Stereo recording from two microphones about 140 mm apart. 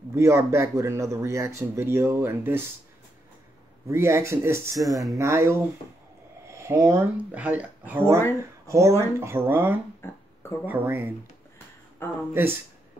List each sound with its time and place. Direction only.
0.1 s speech: 20° right (ahead or behind)
3.9 s speech: 20° right (ahead or behind)
10.0 s speech: 15° left (ahead or behind)
10.6 s speech: 15° right (ahead or behind)
11.5 s a sound: 15° left (ahead or behind)